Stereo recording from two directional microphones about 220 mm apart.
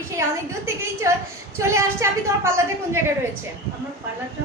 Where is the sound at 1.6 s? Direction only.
10° right (ahead or behind).